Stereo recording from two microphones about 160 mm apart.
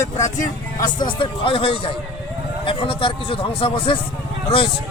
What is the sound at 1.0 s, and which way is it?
Speech, 35° left (ahead or behind).